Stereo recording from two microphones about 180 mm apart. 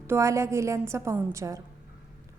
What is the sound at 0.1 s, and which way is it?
A woman's voice, 15° right (ahead or behind).